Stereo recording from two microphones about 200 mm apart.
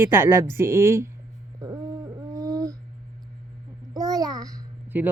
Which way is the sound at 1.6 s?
15° right (ahead or behind).